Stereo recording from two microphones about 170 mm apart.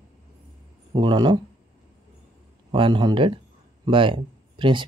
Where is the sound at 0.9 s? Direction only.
30° right (ahead or behind).